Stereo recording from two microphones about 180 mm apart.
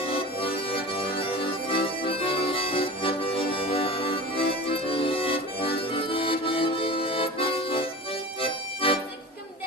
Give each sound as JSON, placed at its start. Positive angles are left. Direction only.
{"t": 0.0, "sound": "music", "side_deg": 30}